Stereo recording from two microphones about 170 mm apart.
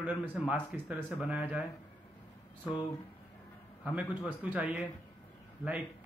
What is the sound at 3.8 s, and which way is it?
A man's voice, 5° right (ahead or behind).